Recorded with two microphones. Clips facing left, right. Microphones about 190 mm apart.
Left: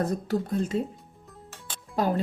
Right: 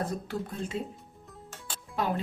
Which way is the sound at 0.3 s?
40° left (ahead or behind).